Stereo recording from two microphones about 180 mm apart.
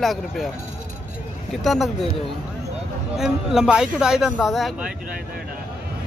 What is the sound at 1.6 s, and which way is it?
Speech, centre (ahead or behind).